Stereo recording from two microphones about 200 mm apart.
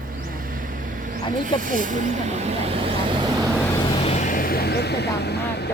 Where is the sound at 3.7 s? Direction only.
25° left (ahead or behind).